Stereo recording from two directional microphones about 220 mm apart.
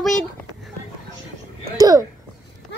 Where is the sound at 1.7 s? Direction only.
15° right (ahead or behind).